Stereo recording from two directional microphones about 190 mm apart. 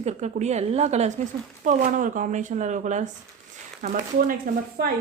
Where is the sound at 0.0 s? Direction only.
35° right (ahead or behind).